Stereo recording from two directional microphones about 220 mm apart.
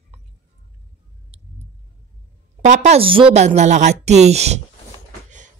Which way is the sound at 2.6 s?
30° right (ahead or behind).